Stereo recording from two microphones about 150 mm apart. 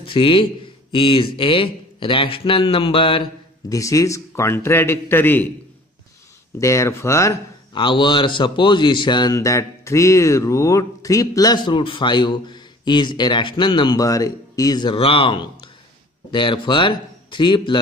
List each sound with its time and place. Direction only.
0.0 s a man's voice: 35° left (ahead or behind)
3.7 s a man's voice: 20° left (ahead or behind)
6.6 s speech: 20° left (ahead or behind)
7.7 s a man's voice: 30° left (ahead or behind)